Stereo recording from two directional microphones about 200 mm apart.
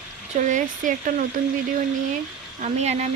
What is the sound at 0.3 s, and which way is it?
Speech, 40° right (ahead or behind).